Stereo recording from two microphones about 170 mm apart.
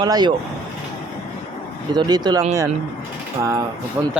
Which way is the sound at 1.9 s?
25° right (ahead or behind).